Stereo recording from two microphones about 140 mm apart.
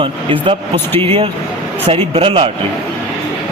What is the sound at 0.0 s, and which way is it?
A man's voice, 40° right (ahead or behind).